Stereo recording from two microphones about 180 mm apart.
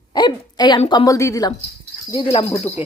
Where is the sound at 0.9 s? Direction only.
20° left (ahead or behind).